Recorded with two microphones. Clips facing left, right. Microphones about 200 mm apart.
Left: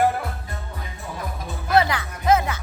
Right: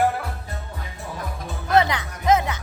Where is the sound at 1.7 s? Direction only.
20° right (ahead or behind).